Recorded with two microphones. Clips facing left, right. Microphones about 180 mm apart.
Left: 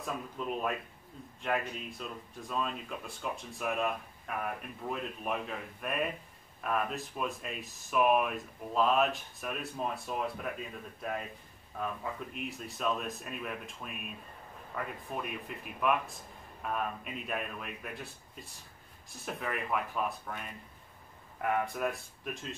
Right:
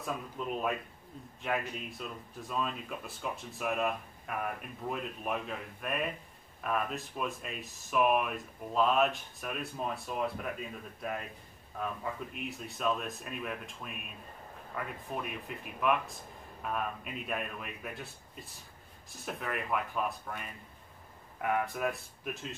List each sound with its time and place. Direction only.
0.0 s speech: centre (ahead or behind)